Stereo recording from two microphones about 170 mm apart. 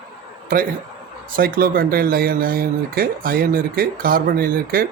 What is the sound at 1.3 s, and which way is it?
Speech, 60° right (ahead or behind).